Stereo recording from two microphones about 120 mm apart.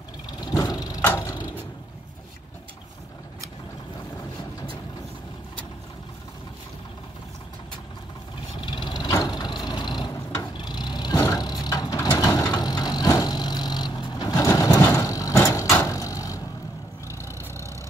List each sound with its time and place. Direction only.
0.4 s vehicle: 35° left (ahead or behind)
8.5 s vehicle: 40° left (ahead or behind)